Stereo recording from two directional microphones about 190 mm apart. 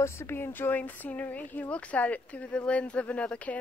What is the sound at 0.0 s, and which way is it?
Speech, 15° left (ahead or behind).